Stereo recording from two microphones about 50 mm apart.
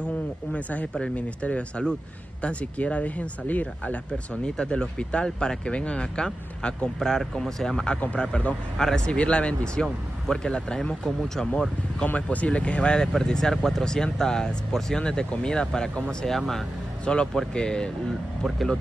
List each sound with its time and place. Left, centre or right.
0.0 s speech: left
4.6 s speech: centre
11.1 s speech: centre
12.1 s speech: left
16.3 s speech: centre
17.0 s speech: centre